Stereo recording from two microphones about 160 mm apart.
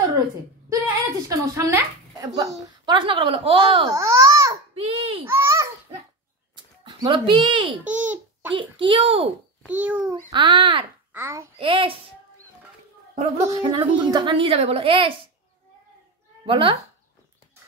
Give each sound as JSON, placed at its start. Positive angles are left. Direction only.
{"t": 1.3, "sound": "a woman's voice", "side_deg": -20}
{"t": 3.9, "sound": "babbling", "side_deg": -20}
{"t": 4.7, "sound": "a sound", "side_deg": -35}
{"t": 5.2, "sound": "babbling", "side_deg": -15}
{"t": 6.5, "sound": "a sound", "side_deg": -30}
{"t": 7.8, "sound": "a child's voice", "side_deg": -10}
{"t": 8.5, "sound": "a woman's voice", "side_deg": -30}
{"t": 9.7, "sound": "a child's voice", "side_deg": -10}
{"t": 10.3, "sound": "a woman's voice", "side_deg": -30}
{"t": 11.1, "sound": "a child's voice", "side_deg": -15}
{"t": 11.5, "sound": "a woman's voice", "side_deg": -35}
{"t": 13.1, "sound": "speech", "side_deg": -45}
{"t": 13.6, "sound": "a woman's voice", "side_deg": -30}
{"t": 16.4, "sound": "speech", "side_deg": -35}